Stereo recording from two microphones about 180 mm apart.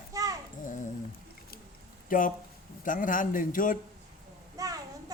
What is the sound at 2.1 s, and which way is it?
A man's voice, 50° left (ahead or behind).